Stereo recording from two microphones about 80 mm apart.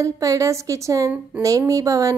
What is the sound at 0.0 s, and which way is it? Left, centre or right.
A woman's voice, right.